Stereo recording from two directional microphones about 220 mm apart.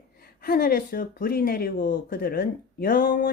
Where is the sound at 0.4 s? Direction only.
40° left (ahead or behind).